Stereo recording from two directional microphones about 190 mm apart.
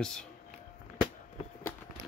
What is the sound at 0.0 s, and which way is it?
Speech, 5° left (ahead or behind).